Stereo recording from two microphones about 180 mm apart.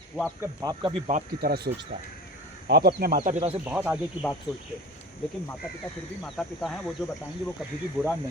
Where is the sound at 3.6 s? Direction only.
10° right (ahead or behind).